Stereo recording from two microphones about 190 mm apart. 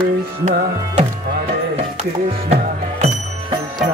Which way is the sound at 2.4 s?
35° right (ahead or behind).